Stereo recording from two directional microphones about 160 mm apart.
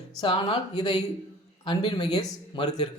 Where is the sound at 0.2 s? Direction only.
25° left (ahead or behind).